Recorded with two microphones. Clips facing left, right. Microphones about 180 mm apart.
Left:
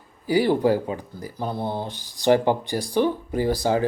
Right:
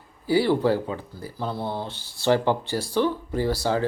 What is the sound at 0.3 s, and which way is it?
Speech, 15° left (ahead or behind).